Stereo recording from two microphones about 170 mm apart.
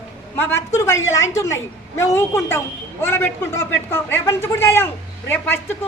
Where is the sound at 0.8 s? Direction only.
15° left (ahead or behind).